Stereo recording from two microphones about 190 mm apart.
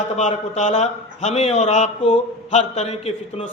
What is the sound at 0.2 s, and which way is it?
A man's voice, 40° left (ahead or behind).